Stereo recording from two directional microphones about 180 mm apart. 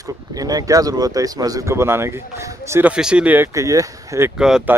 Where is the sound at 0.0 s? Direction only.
20° right (ahead or behind).